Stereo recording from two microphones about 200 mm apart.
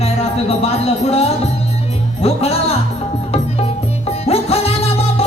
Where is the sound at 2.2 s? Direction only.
30° left (ahead or behind).